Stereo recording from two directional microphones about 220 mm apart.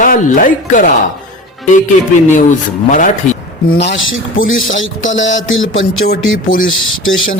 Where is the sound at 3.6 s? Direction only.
50° left (ahead or behind).